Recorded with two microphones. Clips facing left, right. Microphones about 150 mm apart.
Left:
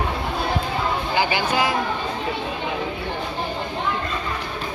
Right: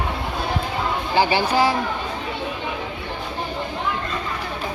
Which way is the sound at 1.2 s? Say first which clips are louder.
Right 4 dB; 35° right (ahead or behind).